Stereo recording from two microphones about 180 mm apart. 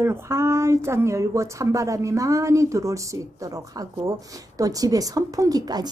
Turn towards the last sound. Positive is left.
turn(degrees=-20)  # may be behind; listen again after turning